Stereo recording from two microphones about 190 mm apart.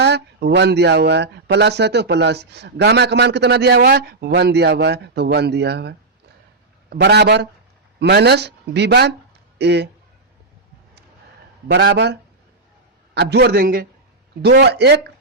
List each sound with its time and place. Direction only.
0.0 s speech: 60° right (ahead or behind)
6.9 s speech: 60° right (ahead or behind)
11.7 s speech: 60° right (ahead or behind)
13.1 s speech: 60° right (ahead or behind)